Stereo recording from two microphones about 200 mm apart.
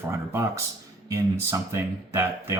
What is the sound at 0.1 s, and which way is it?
Speech, 15° right (ahead or behind).